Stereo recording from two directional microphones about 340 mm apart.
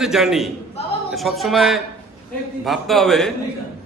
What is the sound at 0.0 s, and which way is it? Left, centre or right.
A man's voice, centre.